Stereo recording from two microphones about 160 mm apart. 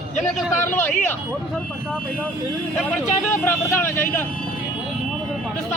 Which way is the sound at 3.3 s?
15° left (ahead or behind).